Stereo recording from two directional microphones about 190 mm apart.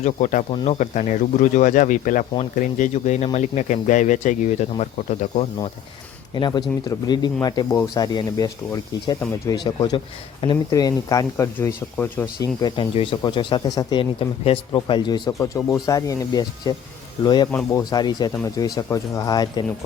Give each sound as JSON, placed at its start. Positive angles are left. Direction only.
{"t": 0.0, "sound": "speech", "side_deg": 40}
{"t": 0.5, "sound": "speech", "side_deg": 30}
{"t": 6.3, "sound": "speech", "side_deg": 25}